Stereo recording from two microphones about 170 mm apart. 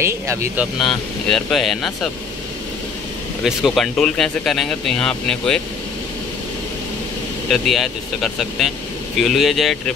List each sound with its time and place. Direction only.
0.0 s speech: 15° right (ahead or behind)
0.8 s speech: centre (ahead or behind)
3.4 s speech: centre (ahead or behind)
7.4 s speech: centre (ahead or behind)